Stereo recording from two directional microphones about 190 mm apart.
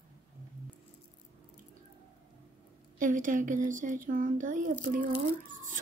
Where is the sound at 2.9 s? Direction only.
45° right (ahead or behind).